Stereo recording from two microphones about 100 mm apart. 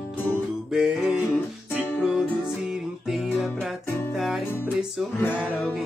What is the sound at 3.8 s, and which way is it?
Music, 25° left (ahead or behind).